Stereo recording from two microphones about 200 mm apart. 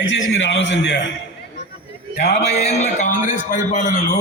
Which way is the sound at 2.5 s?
35° left (ahead or behind).